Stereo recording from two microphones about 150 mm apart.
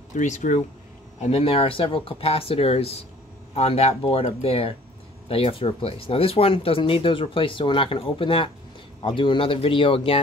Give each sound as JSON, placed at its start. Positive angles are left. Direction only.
{"t": 0.1, "sound": "speech", "side_deg": 55}
{"t": 1.2, "sound": "speech", "side_deg": 45}